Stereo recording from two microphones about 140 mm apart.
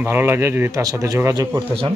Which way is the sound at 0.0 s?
15° right (ahead or behind).